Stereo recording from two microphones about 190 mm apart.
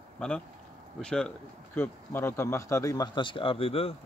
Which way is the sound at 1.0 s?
5° left (ahead or behind).